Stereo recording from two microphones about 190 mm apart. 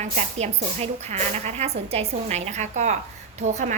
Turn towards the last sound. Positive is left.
turn(degrees=-40)  # may be behind; listen again after turning